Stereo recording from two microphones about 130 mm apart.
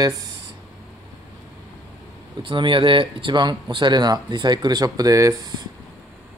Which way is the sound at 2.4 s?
40° right (ahead or behind).